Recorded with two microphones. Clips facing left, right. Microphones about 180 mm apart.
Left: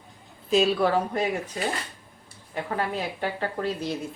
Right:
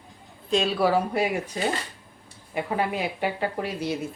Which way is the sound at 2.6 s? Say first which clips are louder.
Right 2 dB; 10° right (ahead or behind).